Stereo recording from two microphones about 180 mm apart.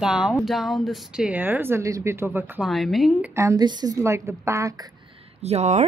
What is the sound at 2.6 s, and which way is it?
Speech, centre (ahead or behind).